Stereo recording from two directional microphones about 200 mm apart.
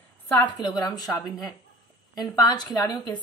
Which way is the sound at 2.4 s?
20° left (ahead or behind).